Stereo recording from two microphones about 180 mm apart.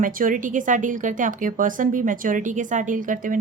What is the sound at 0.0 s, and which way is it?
A woman's voice, 50° right (ahead or behind).